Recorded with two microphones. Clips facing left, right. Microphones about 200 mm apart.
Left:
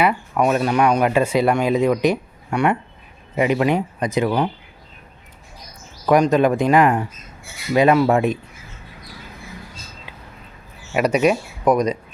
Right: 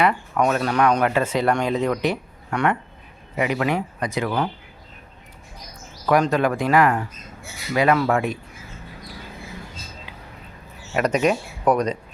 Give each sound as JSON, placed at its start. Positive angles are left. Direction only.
{"t": 0.0, "sound": "speech", "side_deg": 10}
{"t": 3.3, "sound": "speech", "side_deg": 25}
{"t": 6.1, "sound": "speech", "side_deg": 15}
{"t": 10.9, "sound": "speech", "side_deg": 10}